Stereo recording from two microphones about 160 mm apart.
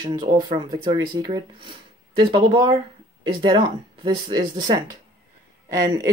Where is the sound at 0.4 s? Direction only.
30° right (ahead or behind).